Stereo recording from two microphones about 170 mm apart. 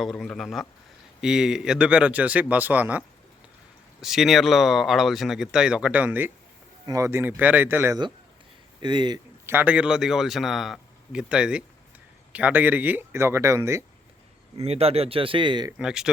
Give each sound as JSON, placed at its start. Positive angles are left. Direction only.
{"t": 0.0, "sound": "a man's voice", "side_deg": 0}
{"t": 4.0, "sound": "a man's voice", "side_deg": 0}
{"t": 8.8, "sound": "speech", "side_deg": -25}
{"t": 9.5, "sound": "a man's voice", "side_deg": -10}
{"t": 14.6, "sound": "speech", "side_deg": -35}
{"t": 15.8, "sound": "speech", "side_deg": -5}